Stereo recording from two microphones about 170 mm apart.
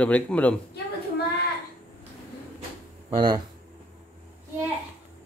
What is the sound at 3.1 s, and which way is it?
Speech, 25° right (ahead or behind).